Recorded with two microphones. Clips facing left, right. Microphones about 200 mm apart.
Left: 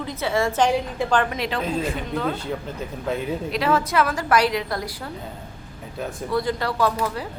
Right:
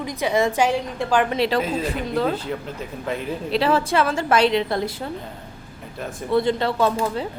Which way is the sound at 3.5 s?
30° right (ahead or behind).